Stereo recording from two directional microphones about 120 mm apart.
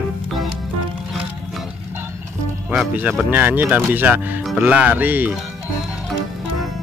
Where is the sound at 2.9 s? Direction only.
15° right (ahead or behind).